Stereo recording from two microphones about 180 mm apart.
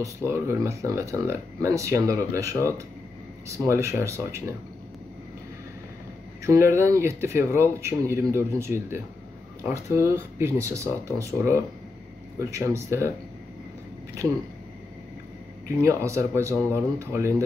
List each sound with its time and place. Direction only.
0.0 s speech: 15° right (ahead or behind)
6.4 s speech: 15° right (ahead or behind)
15.8 s speech: 15° right (ahead or behind)